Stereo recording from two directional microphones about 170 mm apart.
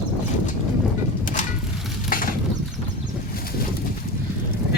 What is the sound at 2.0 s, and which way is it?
Mechanisms, 55° left (ahead or behind).